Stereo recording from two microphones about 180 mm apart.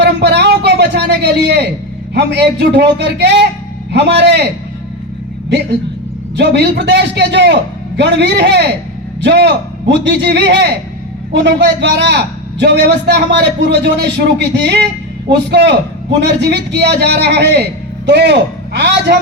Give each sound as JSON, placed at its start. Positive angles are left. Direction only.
{"t": 0.0, "sound": "a sound", "side_deg": -70}
{"t": 2.1, "sound": "a man's voice", "side_deg": -70}
{"t": 6.3, "sound": "a man's voice", "side_deg": -70}